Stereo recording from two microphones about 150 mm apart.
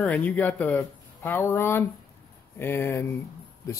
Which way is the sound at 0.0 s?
10° left (ahead or behind).